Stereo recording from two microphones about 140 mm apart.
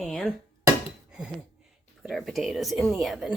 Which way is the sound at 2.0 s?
Centre (ahead or behind).